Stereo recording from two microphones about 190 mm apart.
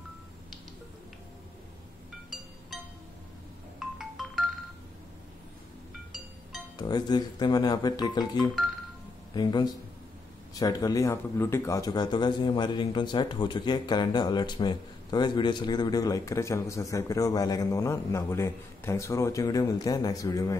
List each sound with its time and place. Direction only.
3.8 s music: centre (ahead or behind)
6.8 s speech: 20° left (ahead or behind)